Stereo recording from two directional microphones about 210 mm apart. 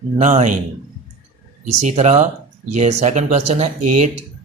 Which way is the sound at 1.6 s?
35° right (ahead or behind).